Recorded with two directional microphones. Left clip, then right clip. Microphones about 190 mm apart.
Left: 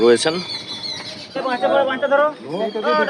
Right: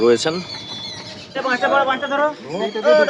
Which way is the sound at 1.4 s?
40° right (ahead or behind).